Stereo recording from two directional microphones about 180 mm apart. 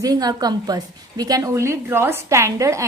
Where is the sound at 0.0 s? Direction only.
20° right (ahead or behind).